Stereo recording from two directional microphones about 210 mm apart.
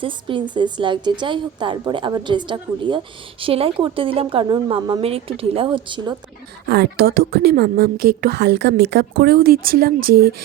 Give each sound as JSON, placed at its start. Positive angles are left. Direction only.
{"t": 0.0, "sound": "a woman's voice", "side_deg": -25}
{"t": 6.7, "sound": "a woman's voice", "side_deg": -50}